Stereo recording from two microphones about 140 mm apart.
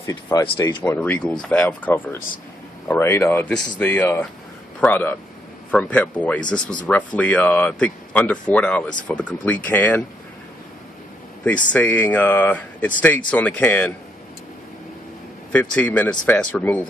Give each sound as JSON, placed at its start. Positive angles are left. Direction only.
{"t": 0.0, "sound": "speech", "side_deg": 25}
{"t": 0.8, "sound": "speech", "side_deg": 10}
{"t": 11.4, "sound": "speech", "side_deg": 10}
{"t": 15.5, "sound": "speech", "side_deg": 10}